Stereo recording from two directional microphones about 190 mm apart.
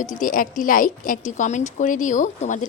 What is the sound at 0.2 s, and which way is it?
A woman's voice, 45° left (ahead or behind).